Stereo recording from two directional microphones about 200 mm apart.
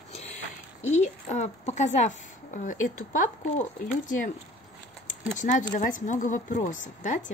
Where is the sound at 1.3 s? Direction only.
35° left (ahead or behind).